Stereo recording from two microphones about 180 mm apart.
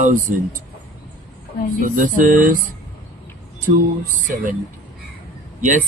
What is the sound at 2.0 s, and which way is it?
Speech, 50° right (ahead or behind).